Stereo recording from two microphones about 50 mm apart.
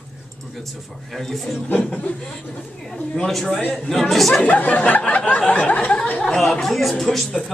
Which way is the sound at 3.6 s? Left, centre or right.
Left.